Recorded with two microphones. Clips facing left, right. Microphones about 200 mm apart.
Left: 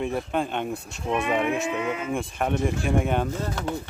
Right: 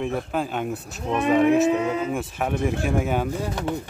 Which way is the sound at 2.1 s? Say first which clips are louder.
Even; 5° right (ahead or behind).